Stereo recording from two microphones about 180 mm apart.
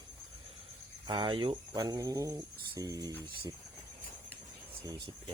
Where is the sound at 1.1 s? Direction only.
25° right (ahead or behind).